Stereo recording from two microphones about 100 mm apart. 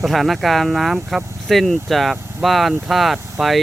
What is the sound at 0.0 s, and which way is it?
Speech, centre (ahead or behind).